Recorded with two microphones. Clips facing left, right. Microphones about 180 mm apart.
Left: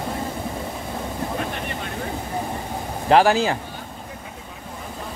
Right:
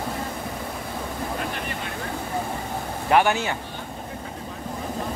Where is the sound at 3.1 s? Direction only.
30° left (ahead or behind).